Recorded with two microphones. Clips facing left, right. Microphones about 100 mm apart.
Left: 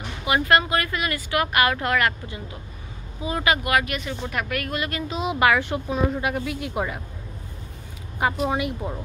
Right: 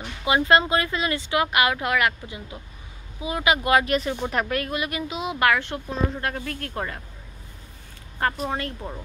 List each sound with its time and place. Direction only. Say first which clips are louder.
0.2 s speech: right 1 dB; 25° right (ahead or behind)
3.6 s speech: right 3 dB; 30° right (ahead or behind)
4.7 s speech: even; 15° right (ahead or behind)
5.1 s speech: left 2 dB; centre (ahead or behind)
8.2 s speech: left 3 dB; 10° left (ahead or behind)